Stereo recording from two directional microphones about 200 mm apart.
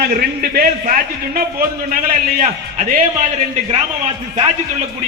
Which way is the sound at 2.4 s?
40° right (ahead or behind).